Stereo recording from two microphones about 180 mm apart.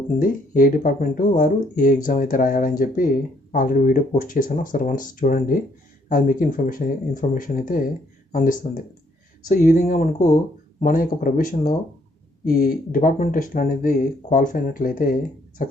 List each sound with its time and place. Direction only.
0.2 s speech: 50° left (ahead or behind)